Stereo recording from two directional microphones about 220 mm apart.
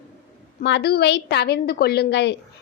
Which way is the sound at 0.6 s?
50° left (ahead or behind).